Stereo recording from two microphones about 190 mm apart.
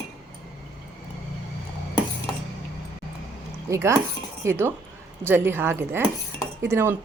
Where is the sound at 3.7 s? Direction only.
15° right (ahead or behind).